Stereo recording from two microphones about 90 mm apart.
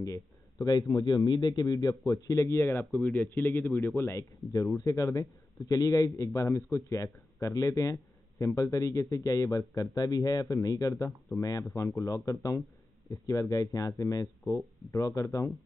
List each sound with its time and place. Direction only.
0.0 s a man's voice: 40° left (ahead or behind); by 3.9 s 25° left (ahead or behind)
3.9 s a man's voice: 35° left (ahead or behind)
11.1 s speech: 5° left (ahead or behind)
11.7 s a man's voice: 40° left (ahead or behind)